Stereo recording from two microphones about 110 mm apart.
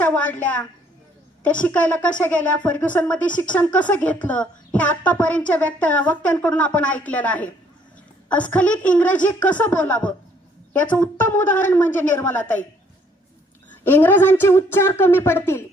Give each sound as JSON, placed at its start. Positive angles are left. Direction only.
{"t": 0.0, "sound": "a woman's voice", "side_deg": 15}
{"t": 13.8, "sound": "a woman's voice", "side_deg": 20}